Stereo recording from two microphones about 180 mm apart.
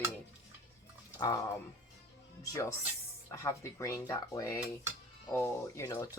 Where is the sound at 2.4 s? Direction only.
15° left (ahead or behind).